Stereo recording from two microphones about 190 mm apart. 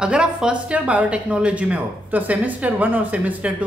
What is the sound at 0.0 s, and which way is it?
Speech, 5° right (ahead or behind).